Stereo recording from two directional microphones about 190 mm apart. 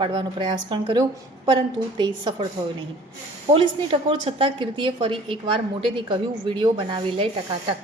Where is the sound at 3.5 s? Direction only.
25° right (ahead or behind).